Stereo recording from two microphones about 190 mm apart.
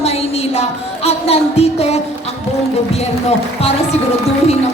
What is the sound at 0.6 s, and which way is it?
Music, 35° left (ahead or behind).